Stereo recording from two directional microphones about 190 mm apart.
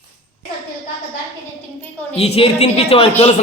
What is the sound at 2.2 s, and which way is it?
Speech, 30° left (ahead or behind).